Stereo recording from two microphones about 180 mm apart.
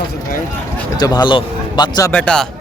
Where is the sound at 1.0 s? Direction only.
25° left (ahead or behind).